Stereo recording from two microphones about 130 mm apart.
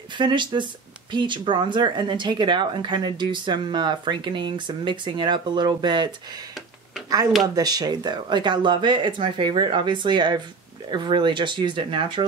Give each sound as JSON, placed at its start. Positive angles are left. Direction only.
{"t": 0.2, "sound": "speech", "side_deg": -35}
{"t": 7.4, "sound": "speech", "side_deg": -30}